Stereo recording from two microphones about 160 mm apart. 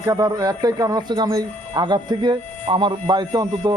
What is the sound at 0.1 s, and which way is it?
Speech, 25° right (ahead or behind).